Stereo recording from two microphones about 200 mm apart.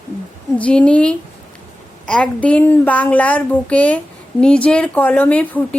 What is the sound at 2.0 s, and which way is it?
Speech, 5° left (ahead or behind).